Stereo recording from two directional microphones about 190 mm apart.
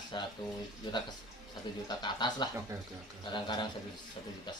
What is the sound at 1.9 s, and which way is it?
Speech, 25° left (ahead or behind).